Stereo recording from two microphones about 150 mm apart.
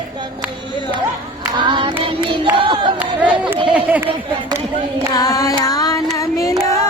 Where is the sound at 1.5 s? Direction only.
30° right (ahead or behind).